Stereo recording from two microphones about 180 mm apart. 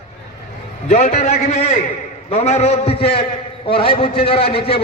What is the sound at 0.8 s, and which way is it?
A man's voice, 40° left (ahead or behind).